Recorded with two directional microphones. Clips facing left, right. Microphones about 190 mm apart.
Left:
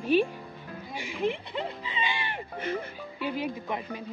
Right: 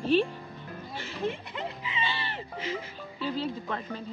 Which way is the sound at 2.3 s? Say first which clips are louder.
Left 2 dB; 55° left (ahead or behind).